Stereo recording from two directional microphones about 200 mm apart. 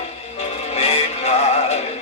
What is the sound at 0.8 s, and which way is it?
Synthetic singing, 30° left (ahead or behind).